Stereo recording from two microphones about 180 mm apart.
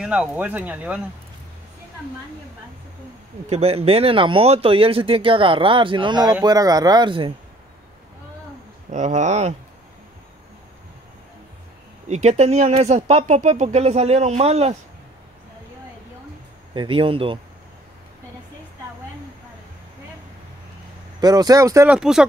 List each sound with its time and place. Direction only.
0.0 s speech: 5° right (ahead or behind)
3.4 s speech: 35° right (ahead or behind)
8.9 s speech: 40° right (ahead or behind)
12.1 s speech: 40° right (ahead or behind)
16.7 s speech: 30° right (ahead or behind)
21.2 s speech: 20° right (ahead or behind)
21.8 s speech: 5° right (ahead or behind)